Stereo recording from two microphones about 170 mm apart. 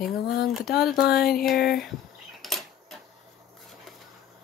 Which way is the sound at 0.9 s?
65° left (ahead or behind).